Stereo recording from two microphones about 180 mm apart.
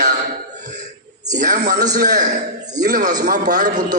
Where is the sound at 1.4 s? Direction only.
45° right (ahead or behind).